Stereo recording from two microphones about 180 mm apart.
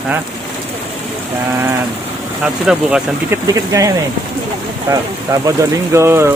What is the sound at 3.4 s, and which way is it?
Speech, 20° right (ahead or behind).